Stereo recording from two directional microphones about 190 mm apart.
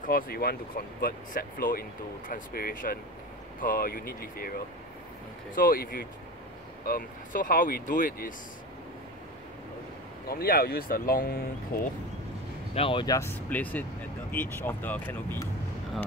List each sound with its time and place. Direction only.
0.0 s speech: 50° left (ahead or behind)
10.2 s speech: 55° left (ahead or behind)
12.7 s speech: 25° left (ahead or behind); by 15.4 s 10° left (ahead or behind)